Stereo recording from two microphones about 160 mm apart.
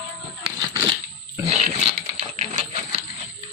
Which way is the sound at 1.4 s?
40° right (ahead or behind).